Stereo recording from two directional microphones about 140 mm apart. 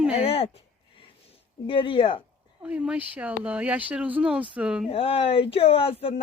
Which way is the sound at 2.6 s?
10° right (ahead or behind).